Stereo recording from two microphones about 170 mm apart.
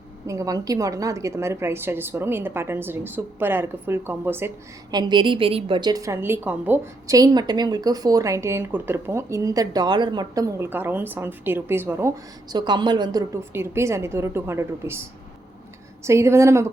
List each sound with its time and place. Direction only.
0.3 s a woman's voice: 20° right (ahead or behind)
4.9 s a woman's voice: 25° right (ahead or behind)
16.0 s a woman's voice: 15° right (ahead or behind)